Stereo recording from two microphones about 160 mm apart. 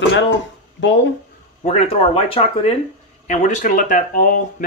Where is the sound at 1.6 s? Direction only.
40° left (ahead or behind); by 4.4 s 55° left (ahead or behind).